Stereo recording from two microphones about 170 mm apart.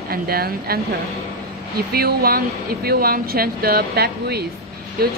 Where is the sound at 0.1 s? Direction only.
65° right (ahead or behind).